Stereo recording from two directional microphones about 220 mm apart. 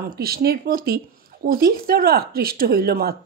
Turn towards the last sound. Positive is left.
turn(degrees=-45)  # may be behind; listen again after turning